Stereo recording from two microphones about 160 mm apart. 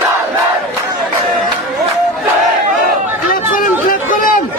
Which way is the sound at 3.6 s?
60° left (ahead or behind).